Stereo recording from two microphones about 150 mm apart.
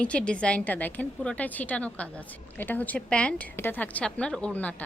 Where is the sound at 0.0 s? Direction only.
10° left (ahead or behind).